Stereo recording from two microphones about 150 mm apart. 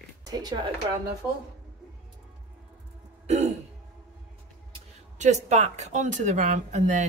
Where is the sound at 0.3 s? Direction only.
25° right (ahead or behind).